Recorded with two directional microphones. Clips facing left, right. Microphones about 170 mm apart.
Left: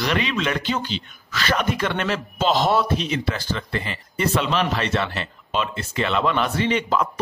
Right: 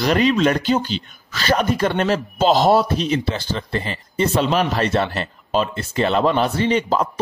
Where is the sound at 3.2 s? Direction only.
25° right (ahead or behind).